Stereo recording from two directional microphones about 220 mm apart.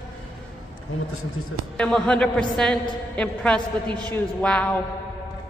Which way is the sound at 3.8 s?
20° right (ahead or behind).